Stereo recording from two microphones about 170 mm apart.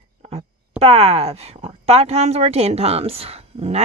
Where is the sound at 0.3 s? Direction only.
35° right (ahead or behind).